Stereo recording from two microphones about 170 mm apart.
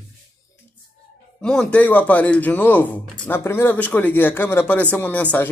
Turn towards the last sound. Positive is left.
turn(degrees=10)  # may be behind; listen again after turning